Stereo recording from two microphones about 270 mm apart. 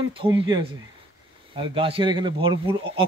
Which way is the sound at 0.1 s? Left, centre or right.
Centre.